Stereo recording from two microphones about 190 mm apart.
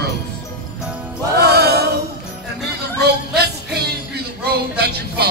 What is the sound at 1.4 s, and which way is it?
Music, 60° right (ahead or behind).